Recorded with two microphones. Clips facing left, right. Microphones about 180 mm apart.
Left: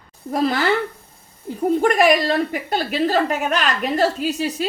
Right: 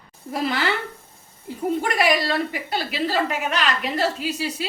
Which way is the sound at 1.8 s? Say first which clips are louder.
Left 6 dB; 45° left (ahead or behind).